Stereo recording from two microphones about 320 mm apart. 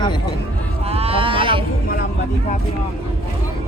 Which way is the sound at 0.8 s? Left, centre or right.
Centre.